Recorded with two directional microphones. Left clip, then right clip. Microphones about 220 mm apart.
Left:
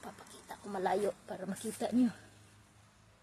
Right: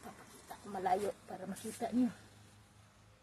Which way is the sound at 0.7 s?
50° left (ahead or behind).